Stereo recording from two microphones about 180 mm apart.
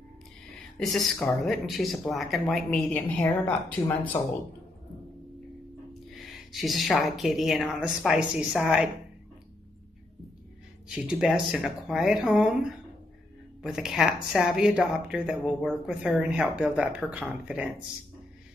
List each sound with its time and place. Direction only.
0.7 s speech: centre (ahead or behind)
6.0 s speech: centre (ahead or behind)
11.0 s speech: 5° right (ahead or behind)